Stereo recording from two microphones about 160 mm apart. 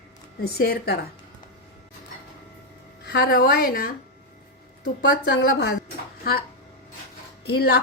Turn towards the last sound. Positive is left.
turn(degrees=80)